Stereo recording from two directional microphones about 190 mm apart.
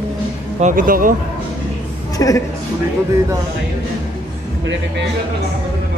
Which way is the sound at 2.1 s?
15° left (ahead or behind).